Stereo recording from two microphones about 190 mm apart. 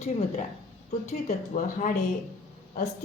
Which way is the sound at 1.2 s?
45° left (ahead or behind).